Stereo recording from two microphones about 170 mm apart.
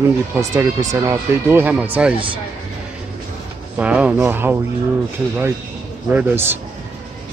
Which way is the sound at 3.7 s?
5° right (ahead or behind).